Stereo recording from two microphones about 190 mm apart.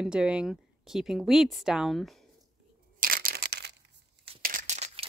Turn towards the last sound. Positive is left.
turn(degrees=-35)  # may be behind; listen again after turning